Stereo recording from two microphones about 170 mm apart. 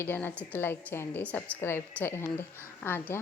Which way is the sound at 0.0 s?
10° left (ahead or behind).